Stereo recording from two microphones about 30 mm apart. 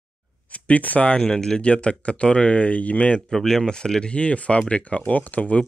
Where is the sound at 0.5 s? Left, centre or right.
Left.